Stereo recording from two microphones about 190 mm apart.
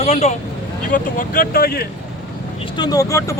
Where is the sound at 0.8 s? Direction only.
45° left (ahead or behind).